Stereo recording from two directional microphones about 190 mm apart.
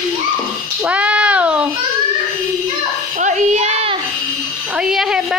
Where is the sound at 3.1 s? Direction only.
40° right (ahead or behind).